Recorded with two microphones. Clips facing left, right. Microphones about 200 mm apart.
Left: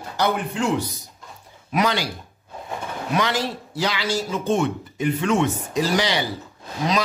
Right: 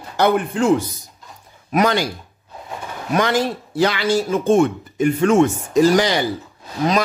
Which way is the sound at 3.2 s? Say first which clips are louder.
Right 6 dB; 50° right (ahead or behind).